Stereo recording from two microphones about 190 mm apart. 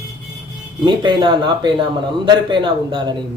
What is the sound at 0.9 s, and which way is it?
A man's voice, 25° right (ahead or behind).